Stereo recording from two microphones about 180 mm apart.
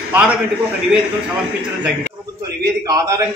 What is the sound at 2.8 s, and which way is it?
Speech, 20° right (ahead or behind).